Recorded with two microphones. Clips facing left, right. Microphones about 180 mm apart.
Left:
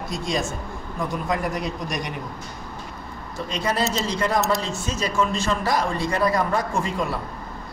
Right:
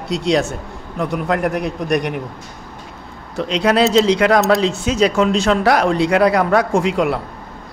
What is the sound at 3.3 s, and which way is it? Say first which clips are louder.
A man's voice: right 9 dB; 75° right (ahead or behind).